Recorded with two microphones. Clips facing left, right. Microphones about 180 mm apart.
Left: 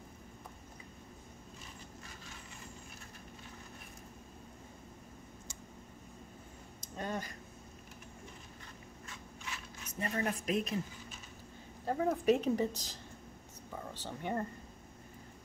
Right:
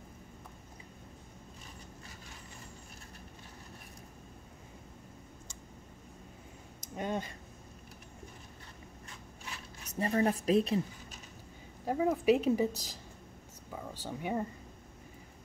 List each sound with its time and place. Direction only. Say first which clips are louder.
7.0 s speech: right 4 dB; 20° right (ahead or behind)
9.8 s speech: right 6 dB; 35° right (ahead or behind)
11.8 s a woman's voice: right 2 dB; 10° right (ahead or behind)
14.0 s a woman's voice: right 2 dB; 10° right (ahead or behind)